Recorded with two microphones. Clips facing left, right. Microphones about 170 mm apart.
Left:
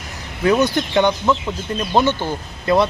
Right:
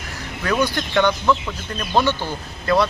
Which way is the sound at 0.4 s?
20° left (ahead or behind).